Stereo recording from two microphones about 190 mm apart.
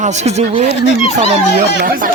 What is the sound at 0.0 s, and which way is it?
Speech, 35° right (ahead or behind).